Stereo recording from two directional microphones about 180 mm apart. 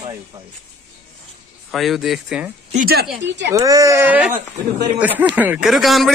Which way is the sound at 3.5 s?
20° right (ahead or behind).